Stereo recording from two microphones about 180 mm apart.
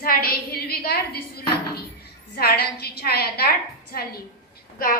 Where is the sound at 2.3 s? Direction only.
60° left (ahead or behind).